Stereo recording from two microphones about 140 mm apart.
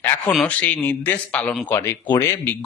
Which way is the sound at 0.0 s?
10° left (ahead or behind).